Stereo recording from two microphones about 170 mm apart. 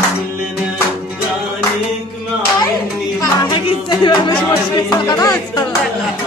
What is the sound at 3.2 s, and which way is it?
Music, 25° left (ahead or behind).